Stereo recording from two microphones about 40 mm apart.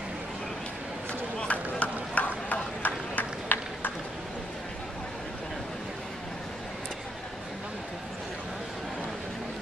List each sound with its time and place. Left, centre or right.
1.4 s run: left